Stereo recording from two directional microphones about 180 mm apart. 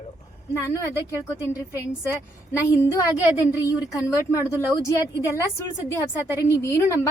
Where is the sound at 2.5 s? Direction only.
15° left (ahead or behind).